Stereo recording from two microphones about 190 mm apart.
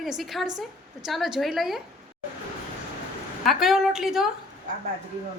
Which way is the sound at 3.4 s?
Centre (ahead or behind).